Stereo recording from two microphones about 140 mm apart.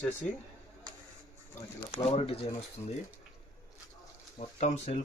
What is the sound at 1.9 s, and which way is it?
Speech, 45° left (ahead or behind).